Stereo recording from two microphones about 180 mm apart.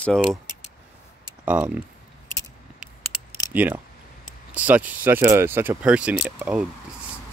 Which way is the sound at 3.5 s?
10° right (ahead or behind).